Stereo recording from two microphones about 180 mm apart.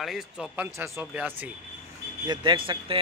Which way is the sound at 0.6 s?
15° right (ahead or behind).